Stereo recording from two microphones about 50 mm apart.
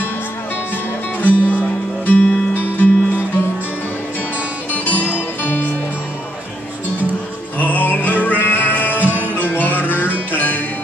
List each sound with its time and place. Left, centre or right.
1.2 s music: left
4.7 s music: left
7.5 s music: left